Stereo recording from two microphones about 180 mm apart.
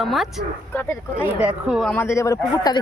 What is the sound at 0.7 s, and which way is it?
Speech, 10° left (ahead or behind).